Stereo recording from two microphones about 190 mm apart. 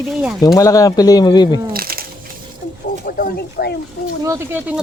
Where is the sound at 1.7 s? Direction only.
50° right (ahead or behind).